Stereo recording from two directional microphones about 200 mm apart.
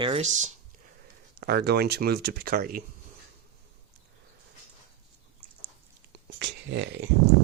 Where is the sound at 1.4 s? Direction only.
50° right (ahead or behind).